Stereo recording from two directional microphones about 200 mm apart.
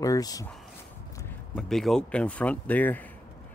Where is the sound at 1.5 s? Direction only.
5° left (ahead or behind).